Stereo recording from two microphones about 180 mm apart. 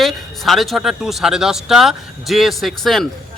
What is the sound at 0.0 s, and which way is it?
A man's voice, centre (ahead or behind).